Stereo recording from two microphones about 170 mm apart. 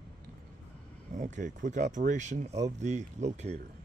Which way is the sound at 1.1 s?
45° right (ahead or behind).